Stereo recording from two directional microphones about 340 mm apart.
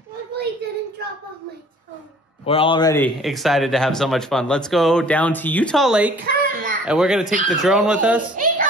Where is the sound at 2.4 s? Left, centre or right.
Centre.